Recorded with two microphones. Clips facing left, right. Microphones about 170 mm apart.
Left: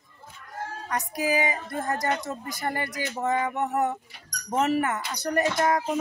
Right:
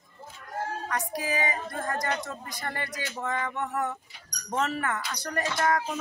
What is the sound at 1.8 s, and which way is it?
Speech, 25° left (ahead or behind).